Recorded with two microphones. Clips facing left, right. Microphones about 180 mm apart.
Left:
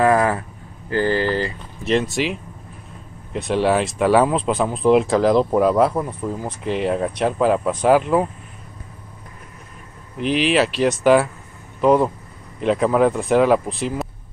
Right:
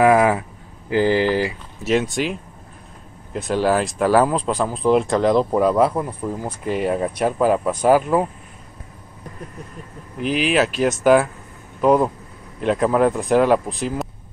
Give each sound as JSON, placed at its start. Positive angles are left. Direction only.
{"t": 0.0, "sound": "speech", "side_deg": -10}
{"t": 3.3, "sound": "speech", "side_deg": 0}
{"t": 10.1, "sound": "speech", "side_deg": 0}